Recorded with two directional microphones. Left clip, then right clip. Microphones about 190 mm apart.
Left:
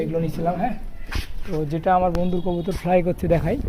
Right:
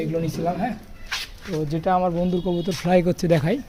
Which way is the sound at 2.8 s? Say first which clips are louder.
Even; 30° right (ahead or behind).